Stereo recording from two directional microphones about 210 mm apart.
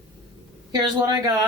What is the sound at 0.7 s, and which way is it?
Speech, 20° right (ahead or behind).